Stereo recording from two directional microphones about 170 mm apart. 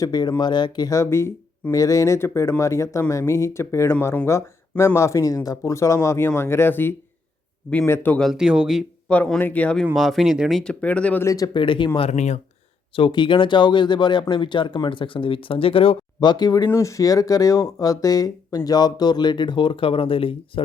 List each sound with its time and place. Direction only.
0.0 s speech: 25° left (ahead or behind)
8.3 s speech: 5° right (ahead or behind)
9.0 s speech: 5° left (ahead or behind); by 11.9 s 30° left (ahead or behind)
11.9 s speech: 40° left (ahead or behind)
13.0 s speech: 25° left (ahead or behind)